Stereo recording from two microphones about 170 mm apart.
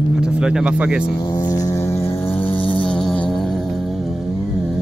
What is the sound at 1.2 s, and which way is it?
Vehicle, 25° left (ahead or behind).